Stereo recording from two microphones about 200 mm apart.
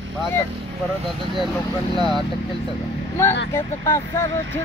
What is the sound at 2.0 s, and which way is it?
Speech, 25° left (ahead or behind).